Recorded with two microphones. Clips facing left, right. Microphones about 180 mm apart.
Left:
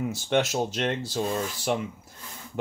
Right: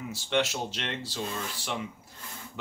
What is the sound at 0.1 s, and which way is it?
Speech, 45° left (ahead or behind).